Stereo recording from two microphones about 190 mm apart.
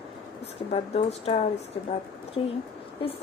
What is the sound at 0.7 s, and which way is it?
A woman's voice, 30° left (ahead or behind).